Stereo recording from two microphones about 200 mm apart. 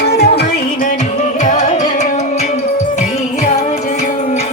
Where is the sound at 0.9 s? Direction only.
40° left (ahead or behind).